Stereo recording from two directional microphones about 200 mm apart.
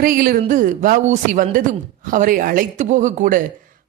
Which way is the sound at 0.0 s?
45° right (ahead or behind).